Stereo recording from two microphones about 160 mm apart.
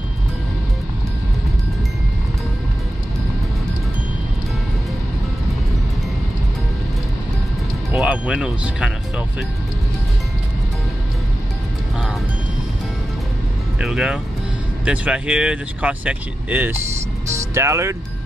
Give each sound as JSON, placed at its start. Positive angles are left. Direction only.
{"t": 7.9, "sound": "speech", "side_deg": -5}
{"t": 13.7, "sound": "speech", "side_deg": -5}